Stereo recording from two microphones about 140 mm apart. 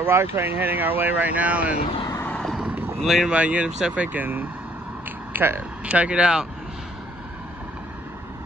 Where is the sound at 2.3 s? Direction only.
Centre (ahead or behind).